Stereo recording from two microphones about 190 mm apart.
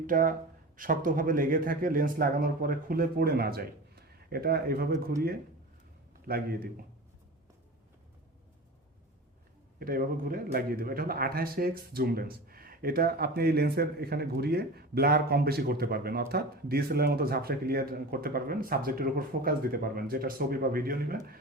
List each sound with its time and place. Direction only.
0.1 s a man's voice: 45° right (ahead or behind)
6.2 s a man's voice: 50° right (ahead or behind)
9.7 s a man's voice: 50° right (ahead or behind)